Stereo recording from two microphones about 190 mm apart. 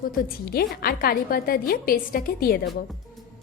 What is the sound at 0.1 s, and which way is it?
A woman's voice, 50° left (ahead or behind).